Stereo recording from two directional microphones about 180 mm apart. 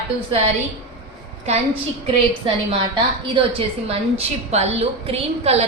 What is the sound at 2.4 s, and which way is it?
Speech, 30° right (ahead or behind).